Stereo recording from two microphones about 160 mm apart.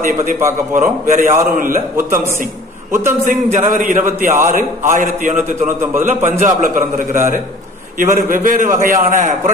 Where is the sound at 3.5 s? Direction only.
55° right (ahead or behind).